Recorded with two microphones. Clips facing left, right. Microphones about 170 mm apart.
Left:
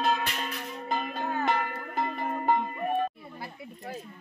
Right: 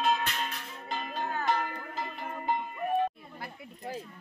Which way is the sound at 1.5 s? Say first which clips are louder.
Left 1 dB; 55° left (ahead or behind).